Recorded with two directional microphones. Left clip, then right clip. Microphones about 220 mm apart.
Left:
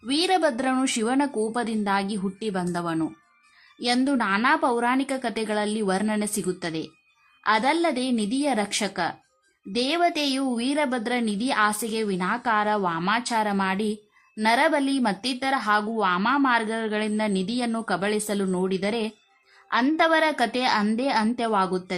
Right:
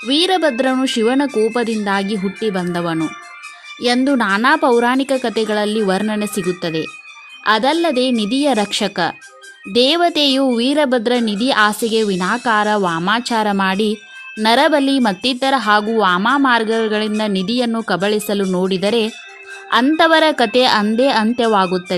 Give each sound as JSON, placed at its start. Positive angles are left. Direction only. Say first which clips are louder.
{"t": 0.1, "sound": "a woman's voice", "louder": "right 7 dB", "side_deg": -20}